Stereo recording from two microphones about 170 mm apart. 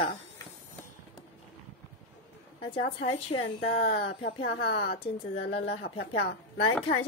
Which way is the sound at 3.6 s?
75° left (ahead or behind).